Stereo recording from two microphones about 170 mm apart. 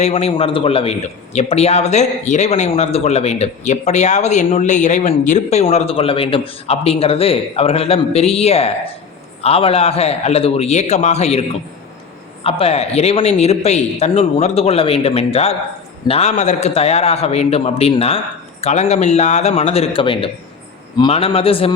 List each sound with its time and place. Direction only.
0.0 s a man's voice: 40° left (ahead or behind)